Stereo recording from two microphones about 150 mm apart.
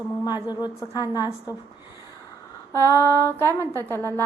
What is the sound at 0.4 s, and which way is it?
Speech, 25° left (ahead or behind).